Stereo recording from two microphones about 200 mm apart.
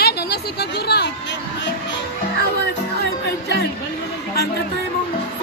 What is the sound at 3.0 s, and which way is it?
Music, 55° left (ahead or behind).